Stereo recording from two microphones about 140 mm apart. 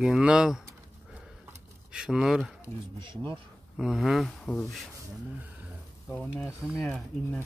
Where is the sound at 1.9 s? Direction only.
5° right (ahead or behind).